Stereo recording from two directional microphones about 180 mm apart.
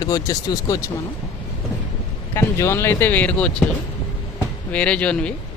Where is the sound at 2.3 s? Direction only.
15° left (ahead or behind).